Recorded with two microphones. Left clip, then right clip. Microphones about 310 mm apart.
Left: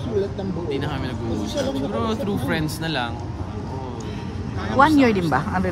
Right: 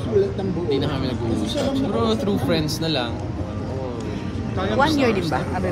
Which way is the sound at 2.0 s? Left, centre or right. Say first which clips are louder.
Right 3 dB; centre.